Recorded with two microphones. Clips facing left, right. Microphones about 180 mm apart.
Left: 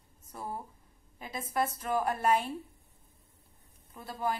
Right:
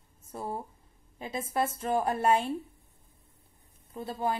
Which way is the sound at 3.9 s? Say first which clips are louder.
Right 3 dB; 25° right (ahead or behind).